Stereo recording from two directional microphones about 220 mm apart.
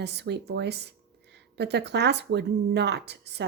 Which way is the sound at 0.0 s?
50° right (ahead or behind).